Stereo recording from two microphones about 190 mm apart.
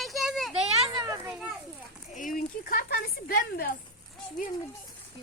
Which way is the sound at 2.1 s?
45° left (ahead or behind).